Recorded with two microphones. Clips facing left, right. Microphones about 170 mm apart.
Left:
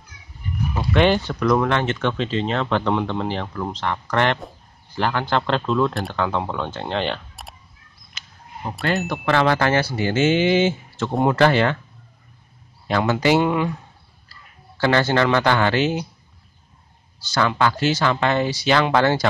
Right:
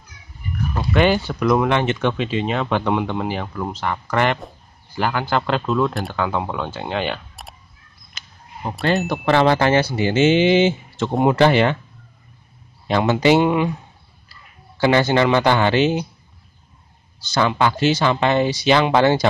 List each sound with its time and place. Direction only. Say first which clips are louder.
0.7 s speech: even; 5° right (ahead or behind)
1.5 s speech: right 2 dB; 15° right (ahead or behind)
9.0 s speech: right 3 dB; 35° right (ahead or behind)
12.8 s speech: right 3 dB; 20° right (ahead or behind)
14.8 s speech: right 2 dB; 15° right (ahead or behind)
17.2 s speech: right 2 dB; 20° right (ahead or behind)